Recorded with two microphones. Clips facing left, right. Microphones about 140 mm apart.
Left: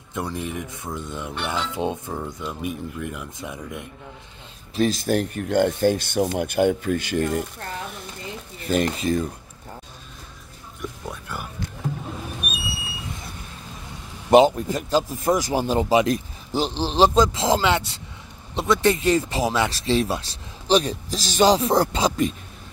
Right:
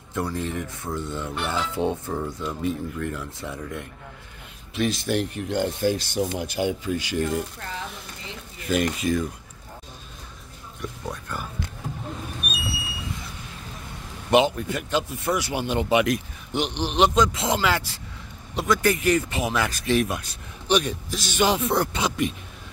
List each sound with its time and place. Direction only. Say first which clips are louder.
0.1 s speech: right 1 dB; 20° left (ahead or behind)
1.3 s speech: left 1 dB; centre (ahead or behind)
1.8 s speech: right 1 dB; 15° left (ahead or behind)
4.7 s speech: left 3 dB; 40° left (ahead or behind)
8.6 s speech: left 1 dB; 35° left (ahead or behind)
10.8 s a sound: even; 10° left (ahead or behind)
14.3 s speech: left 5 dB; 35° left (ahead or behind)